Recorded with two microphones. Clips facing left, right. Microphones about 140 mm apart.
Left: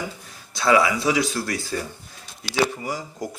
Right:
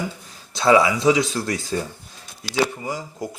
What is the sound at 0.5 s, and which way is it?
Speech, 25° right (ahead or behind).